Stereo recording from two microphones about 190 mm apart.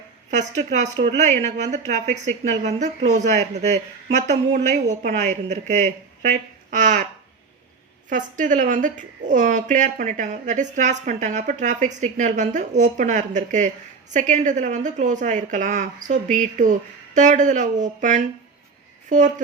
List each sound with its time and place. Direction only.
0.3 s a woman's voice: 40° right (ahead or behind)
8.1 s a woman's voice: 40° right (ahead or behind)